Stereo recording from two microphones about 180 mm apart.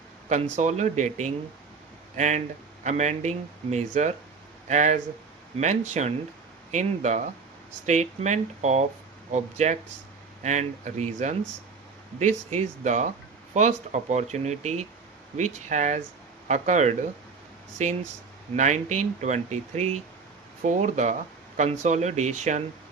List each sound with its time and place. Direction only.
0.3 s speech: 40° right (ahead or behind)
18.5 s speech: 40° right (ahead or behind)